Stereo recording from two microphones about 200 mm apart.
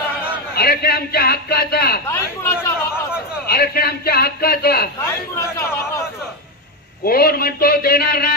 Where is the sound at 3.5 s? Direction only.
50° left (ahead or behind).